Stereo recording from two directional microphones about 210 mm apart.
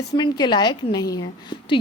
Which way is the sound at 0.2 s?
20° left (ahead or behind).